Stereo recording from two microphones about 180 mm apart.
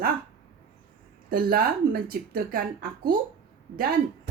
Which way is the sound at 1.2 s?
55° right (ahead or behind).